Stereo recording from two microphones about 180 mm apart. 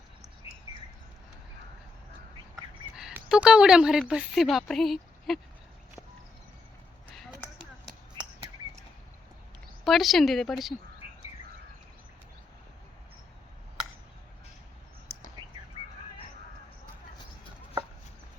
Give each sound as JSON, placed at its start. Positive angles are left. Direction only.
{"t": 2.9, "sound": "speech", "side_deg": -5}
{"t": 8.2, "sound": "a sound", "side_deg": -25}
{"t": 9.8, "sound": "speech", "side_deg": 0}
{"t": 11.0, "sound": "bird", "side_deg": 35}